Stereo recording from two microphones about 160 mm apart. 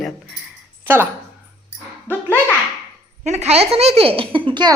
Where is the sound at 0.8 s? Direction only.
15° right (ahead or behind).